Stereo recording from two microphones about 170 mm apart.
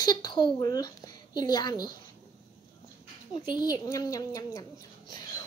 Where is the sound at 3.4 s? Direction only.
25° left (ahead or behind).